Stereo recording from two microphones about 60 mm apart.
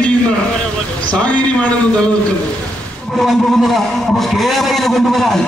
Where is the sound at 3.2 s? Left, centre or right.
Centre.